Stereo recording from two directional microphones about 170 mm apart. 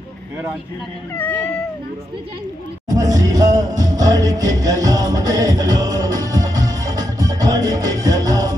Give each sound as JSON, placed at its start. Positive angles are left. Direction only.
{"t": 1.1, "sound": "cat", "side_deg": 10}
{"t": 2.9, "sound": "music", "side_deg": -20}